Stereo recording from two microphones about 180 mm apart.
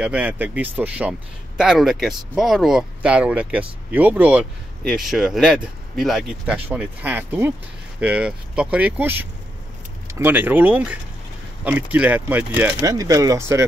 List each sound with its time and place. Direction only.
0.0 s speech: 10° right (ahead or behind)